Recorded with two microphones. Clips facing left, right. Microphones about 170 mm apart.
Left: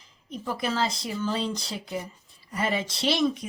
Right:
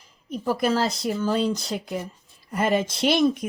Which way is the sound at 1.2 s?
50° right (ahead or behind).